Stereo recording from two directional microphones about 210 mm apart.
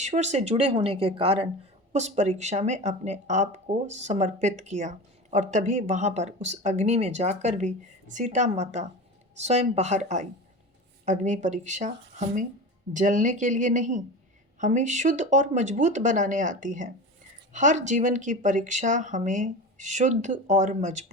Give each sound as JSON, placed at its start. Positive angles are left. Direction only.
{"t": 0.0, "sound": "speech", "side_deg": -35}